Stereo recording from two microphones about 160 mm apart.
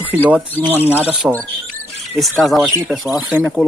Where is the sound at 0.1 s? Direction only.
10° right (ahead or behind).